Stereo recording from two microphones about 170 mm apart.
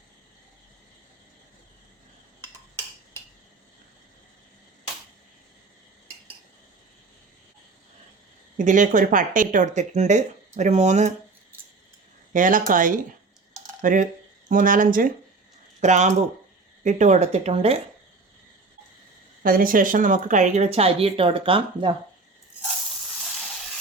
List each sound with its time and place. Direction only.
8.5 s speech: 50° right (ahead or behind)
12.3 s speech: 50° right (ahead or behind); by 17.8 s 35° right (ahead or behind)
19.4 s speech: 55° right (ahead or behind); by 21.9 s 30° right (ahead or behind)